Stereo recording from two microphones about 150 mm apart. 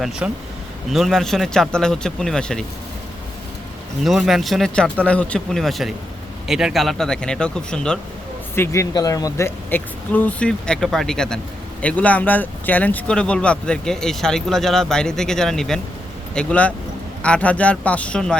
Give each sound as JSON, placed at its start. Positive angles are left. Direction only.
{"t": 0.2, "sound": "speech", "side_deg": -10}
{"t": 4.0, "sound": "speech", "side_deg": 0}
{"t": 8.5, "sound": "speech", "side_deg": 20}
{"t": 9.6, "sound": "speech", "side_deg": 10}